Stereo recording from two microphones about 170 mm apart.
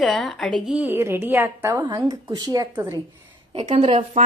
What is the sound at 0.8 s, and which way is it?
A woman's voice, 10° right (ahead or behind).